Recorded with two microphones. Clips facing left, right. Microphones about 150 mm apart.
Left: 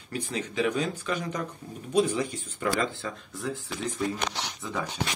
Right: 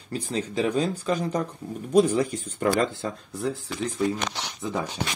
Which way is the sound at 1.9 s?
45° right (ahead or behind).